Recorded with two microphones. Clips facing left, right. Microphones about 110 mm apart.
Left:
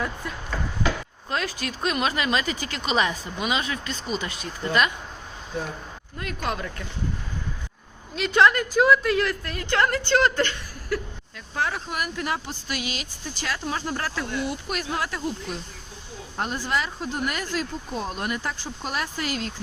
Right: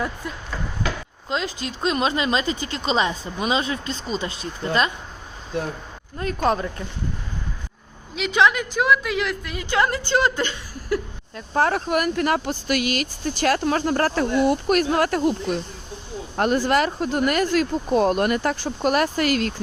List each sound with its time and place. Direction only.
1.3 s speech: 20° right (ahead or behind)
6.1 s speech: 35° right (ahead or behind)
8.1 s a woman's voice: 5° right (ahead or behind)
11.3 s speech: 45° right (ahead or behind); by 19.6 s 65° right (ahead or behind)